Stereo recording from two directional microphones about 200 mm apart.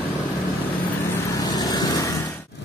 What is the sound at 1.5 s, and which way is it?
Vehicle, 20° left (ahead or behind).